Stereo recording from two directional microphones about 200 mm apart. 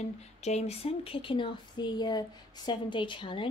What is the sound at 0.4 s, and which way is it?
Speech, 35° left (ahead or behind).